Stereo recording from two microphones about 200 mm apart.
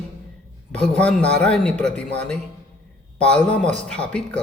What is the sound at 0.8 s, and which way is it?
Speech, 5° left (ahead or behind).